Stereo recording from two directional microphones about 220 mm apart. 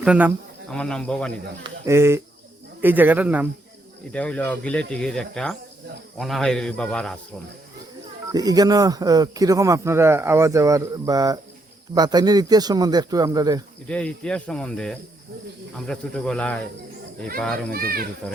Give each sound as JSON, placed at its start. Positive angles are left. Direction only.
{"t": 0.0, "sound": "speech", "side_deg": -5}
{"t": 1.6, "sound": "speech", "side_deg": -15}
{"t": 4.1, "sound": "speech", "side_deg": 5}
{"t": 8.3, "sound": "speech", "side_deg": -15}
{"t": 13.8, "sound": "speech", "side_deg": 5}
{"t": 17.7, "sound": "speech", "side_deg": -40}